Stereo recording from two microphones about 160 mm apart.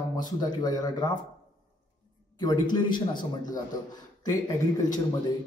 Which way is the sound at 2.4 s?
25° left (ahead or behind).